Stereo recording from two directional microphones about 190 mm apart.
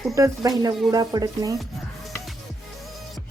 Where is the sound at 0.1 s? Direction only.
20° right (ahead or behind).